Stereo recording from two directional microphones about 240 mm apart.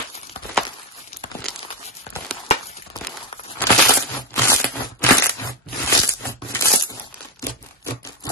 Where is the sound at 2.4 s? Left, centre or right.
Left.